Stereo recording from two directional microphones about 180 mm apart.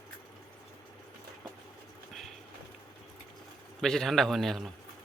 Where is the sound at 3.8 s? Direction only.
Centre (ahead or behind).